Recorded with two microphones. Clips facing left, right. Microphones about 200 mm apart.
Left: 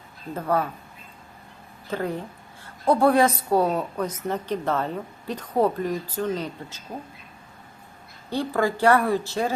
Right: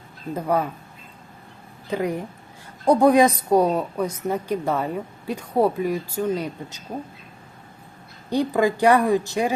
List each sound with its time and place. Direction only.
0.3 s a woman's voice: 15° right (ahead or behind)
1.9 s a woman's voice: 15° right (ahead or behind)
8.3 s a woman's voice: 15° right (ahead or behind)